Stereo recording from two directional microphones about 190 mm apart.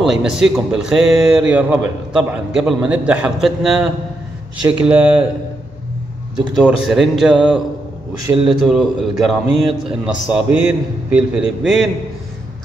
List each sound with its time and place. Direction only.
0.0 s a man's voice: 5° right (ahead or behind)
6.3 s a man's voice: centre (ahead or behind)